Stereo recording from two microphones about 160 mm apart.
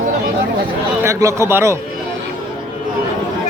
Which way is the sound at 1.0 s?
20° right (ahead or behind).